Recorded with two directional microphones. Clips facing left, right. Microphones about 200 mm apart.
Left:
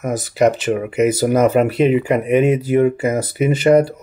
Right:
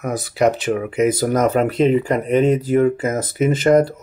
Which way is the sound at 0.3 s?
5° left (ahead or behind).